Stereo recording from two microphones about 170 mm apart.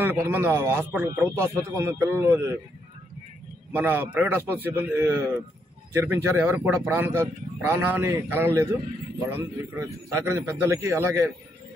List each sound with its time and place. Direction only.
0.0 s a man's voice: 10° right (ahead or behind)
3.7 s a man's voice: 10° right (ahead or behind)